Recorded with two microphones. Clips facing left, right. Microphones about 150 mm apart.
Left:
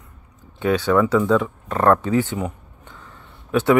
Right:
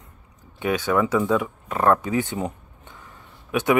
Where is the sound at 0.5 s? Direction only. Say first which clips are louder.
Left 4 dB; 15° right (ahead or behind).